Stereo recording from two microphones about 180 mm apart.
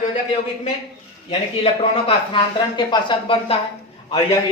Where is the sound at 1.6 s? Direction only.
30° left (ahead or behind).